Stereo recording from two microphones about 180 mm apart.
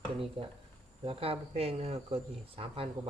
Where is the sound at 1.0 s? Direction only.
35° right (ahead or behind).